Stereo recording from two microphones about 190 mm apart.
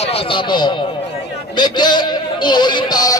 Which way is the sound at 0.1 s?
25° left (ahead or behind).